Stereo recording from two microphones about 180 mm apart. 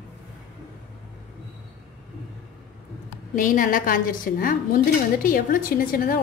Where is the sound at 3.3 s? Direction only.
50° left (ahead or behind).